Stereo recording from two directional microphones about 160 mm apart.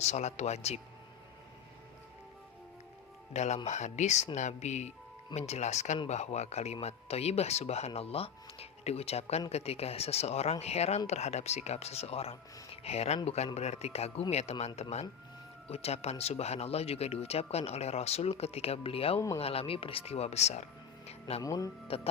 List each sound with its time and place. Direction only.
0.0 s speech: 45° left (ahead or behind)
3.3 s speech: 45° left (ahead or behind)
21.1 s music: 40° left (ahead or behind)
21.4 s speech: 20° left (ahead or behind)
21.8 s speech: 35° left (ahead or behind)